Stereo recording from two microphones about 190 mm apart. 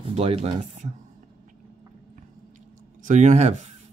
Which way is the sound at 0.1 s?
35° right (ahead or behind).